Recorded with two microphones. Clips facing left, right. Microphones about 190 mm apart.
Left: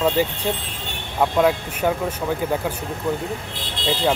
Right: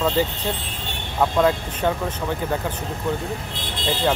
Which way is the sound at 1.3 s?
10° left (ahead or behind).